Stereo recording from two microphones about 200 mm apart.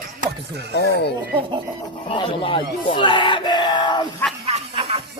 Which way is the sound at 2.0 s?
25° left (ahead or behind).